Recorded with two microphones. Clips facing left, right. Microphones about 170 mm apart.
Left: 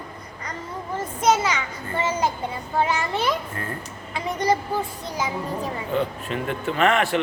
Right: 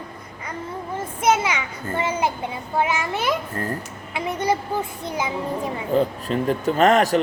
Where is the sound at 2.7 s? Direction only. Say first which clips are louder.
Even; 10° right (ahead or behind).